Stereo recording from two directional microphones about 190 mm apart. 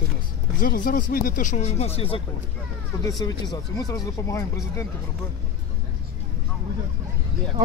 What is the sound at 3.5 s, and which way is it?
Speech, 20° left (ahead or behind).